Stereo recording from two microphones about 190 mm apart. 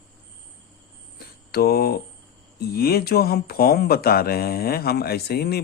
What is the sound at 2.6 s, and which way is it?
Speech, 55° left (ahead or behind).